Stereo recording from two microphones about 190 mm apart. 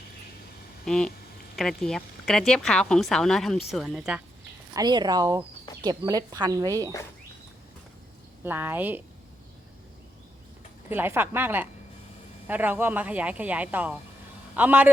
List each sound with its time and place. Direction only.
0.9 s speech: 5° left (ahead or behind)
4.7 s speech: 20° right (ahead or behind)
8.4 s speech: 10° right (ahead or behind)
10.8 s speech: 10° right (ahead or behind)